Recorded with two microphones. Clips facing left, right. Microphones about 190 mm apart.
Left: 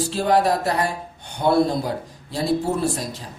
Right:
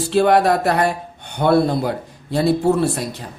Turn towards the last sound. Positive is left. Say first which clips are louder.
# right 5 dB
turn(degrees=-65)  # may be behind; listen again after turning